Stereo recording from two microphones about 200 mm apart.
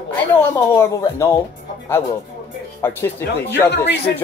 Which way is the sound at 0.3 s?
15° left (ahead or behind).